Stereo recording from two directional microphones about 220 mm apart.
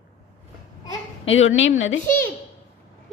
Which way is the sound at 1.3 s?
60° left (ahead or behind).